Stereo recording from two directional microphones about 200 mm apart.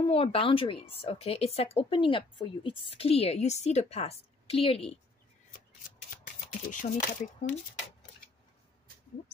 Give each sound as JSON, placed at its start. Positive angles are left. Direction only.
{"t": 0.0, "sound": "a woman's voice", "side_deg": 25}
{"t": 6.7, "sound": "speech", "side_deg": 40}